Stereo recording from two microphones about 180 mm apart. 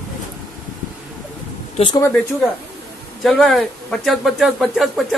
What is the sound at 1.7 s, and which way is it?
Speech, 25° left (ahead or behind).